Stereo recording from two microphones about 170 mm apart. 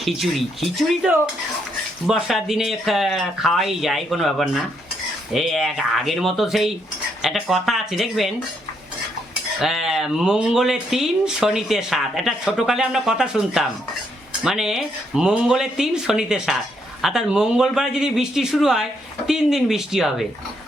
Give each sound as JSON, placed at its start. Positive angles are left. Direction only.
{"t": 0.0, "sound": "speech", "side_deg": 0}
{"t": 9.6, "sound": "speech", "side_deg": 0}